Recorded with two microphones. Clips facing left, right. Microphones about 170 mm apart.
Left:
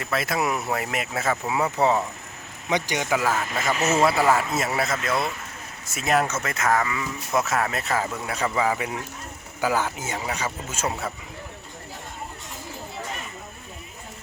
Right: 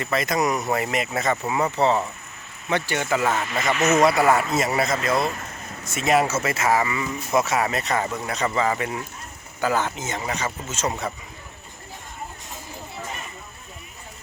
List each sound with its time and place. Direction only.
0.0 s speech: centre (ahead or behind)
3.8 s speech: 30° left (ahead or behind)
4.0 s speech: centre (ahead or behind)